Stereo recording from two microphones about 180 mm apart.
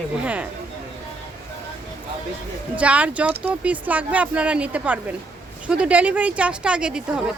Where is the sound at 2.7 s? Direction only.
5° right (ahead or behind).